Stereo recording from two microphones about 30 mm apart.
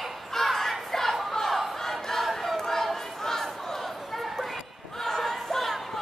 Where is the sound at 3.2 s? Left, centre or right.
Centre.